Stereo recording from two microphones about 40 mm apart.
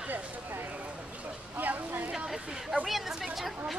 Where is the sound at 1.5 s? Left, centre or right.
Right.